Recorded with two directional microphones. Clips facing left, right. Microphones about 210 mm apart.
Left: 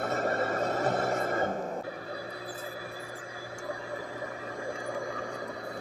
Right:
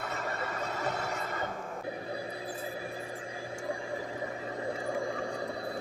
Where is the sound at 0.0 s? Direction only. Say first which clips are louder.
Left 7 dB; 50° left (ahead or behind).